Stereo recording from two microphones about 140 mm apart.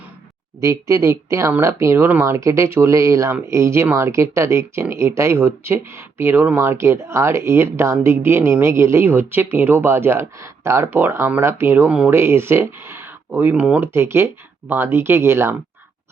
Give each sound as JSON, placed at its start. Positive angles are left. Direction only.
{"t": 0.6, "sound": "speech", "side_deg": -20}